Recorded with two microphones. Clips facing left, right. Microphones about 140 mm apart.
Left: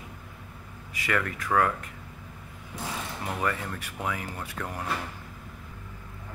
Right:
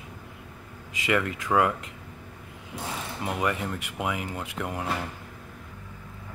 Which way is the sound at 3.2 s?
15° right (ahead or behind).